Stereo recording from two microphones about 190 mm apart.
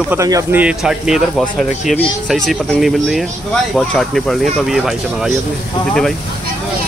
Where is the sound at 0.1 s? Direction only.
15° right (ahead or behind).